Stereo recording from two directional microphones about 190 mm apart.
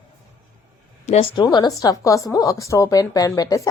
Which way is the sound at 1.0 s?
35° left (ahead or behind).